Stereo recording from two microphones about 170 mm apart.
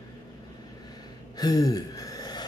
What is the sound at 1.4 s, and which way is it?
Gasp, 20° left (ahead or behind).